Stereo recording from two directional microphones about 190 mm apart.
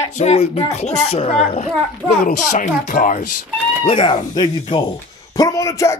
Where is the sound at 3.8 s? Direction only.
25° left (ahead or behind).